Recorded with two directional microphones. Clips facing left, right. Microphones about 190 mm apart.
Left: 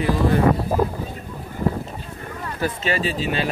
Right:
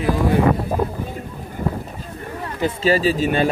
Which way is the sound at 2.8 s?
40° right (ahead or behind).